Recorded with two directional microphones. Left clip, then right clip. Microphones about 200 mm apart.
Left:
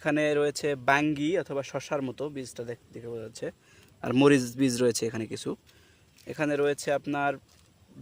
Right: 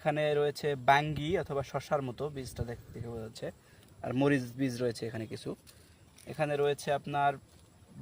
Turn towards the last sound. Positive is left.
turn(degrees=50)  # may be behind; listen again after turning